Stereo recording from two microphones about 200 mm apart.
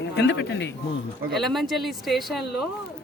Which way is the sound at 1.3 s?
Centre (ahead or behind).